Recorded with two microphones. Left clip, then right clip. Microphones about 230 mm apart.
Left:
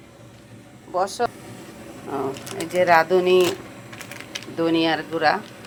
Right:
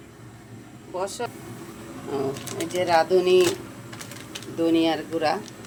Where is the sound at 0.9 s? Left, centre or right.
Centre.